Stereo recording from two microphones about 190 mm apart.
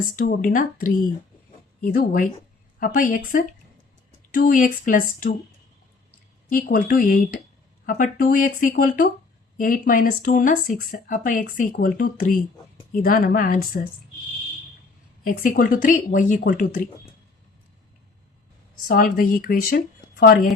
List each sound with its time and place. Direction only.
0.2 s speech: 45° left (ahead or behind)
6.5 s speech: 50° left (ahead or behind)
15.2 s speech: 45° left (ahead or behind)
18.9 s speech: 50° left (ahead or behind)